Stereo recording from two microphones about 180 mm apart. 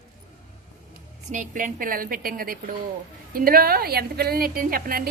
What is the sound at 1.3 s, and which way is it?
A woman's voice, 45° right (ahead or behind).